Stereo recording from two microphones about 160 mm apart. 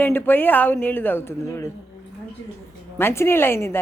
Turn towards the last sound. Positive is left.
turn(degrees=15)  # may be behind; listen again after turning